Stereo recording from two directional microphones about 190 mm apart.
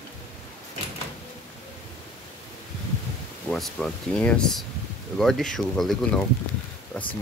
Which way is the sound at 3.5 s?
5° left (ahead or behind).